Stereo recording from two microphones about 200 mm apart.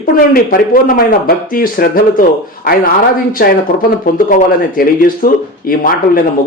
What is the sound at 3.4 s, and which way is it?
Speech, 50° left (ahead or behind).